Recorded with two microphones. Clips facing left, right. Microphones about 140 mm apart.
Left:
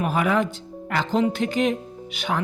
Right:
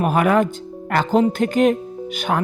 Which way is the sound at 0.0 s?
50° right (ahead or behind).